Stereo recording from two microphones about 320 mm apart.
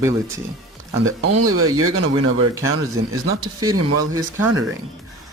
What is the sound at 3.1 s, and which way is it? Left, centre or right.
Speech, right.